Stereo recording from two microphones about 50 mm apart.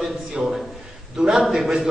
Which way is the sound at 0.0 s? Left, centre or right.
Centre.